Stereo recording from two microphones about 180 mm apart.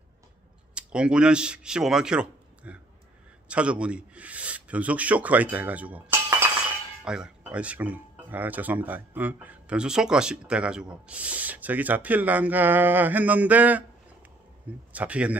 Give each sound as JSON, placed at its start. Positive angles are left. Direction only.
{"t": 0.7, "sound": "speech", "side_deg": -5}
{"t": 14.9, "sound": "speech", "side_deg": -10}